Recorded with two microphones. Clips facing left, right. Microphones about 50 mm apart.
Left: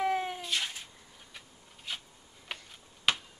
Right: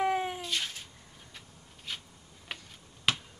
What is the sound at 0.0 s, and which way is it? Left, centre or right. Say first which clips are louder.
Cat: right 1 dB; centre.